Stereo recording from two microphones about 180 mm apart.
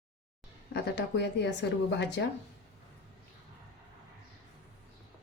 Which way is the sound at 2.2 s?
90° left.